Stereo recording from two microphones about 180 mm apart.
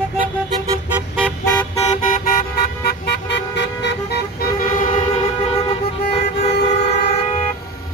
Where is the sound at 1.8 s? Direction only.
45° left (ahead or behind).